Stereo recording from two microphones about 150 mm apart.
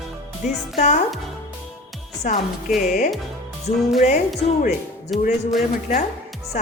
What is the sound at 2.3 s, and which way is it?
Speech, 60° left (ahead or behind).